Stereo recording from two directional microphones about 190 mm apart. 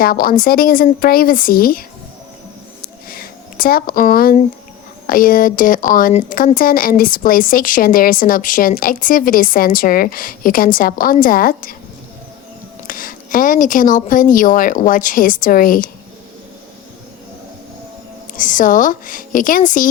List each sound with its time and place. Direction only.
0.0 s speech: 50° left (ahead or behind)
3.1 s speech: 50° left (ahead or behind)
12.9 s speech: 45° left (ahead or behind)
18.3 s speech: 45° left (ahead or behind)